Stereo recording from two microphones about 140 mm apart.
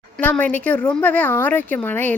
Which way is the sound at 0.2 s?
10° left (ahead or behind).